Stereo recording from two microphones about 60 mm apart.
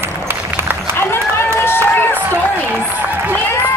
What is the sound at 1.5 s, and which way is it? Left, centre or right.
Run, left.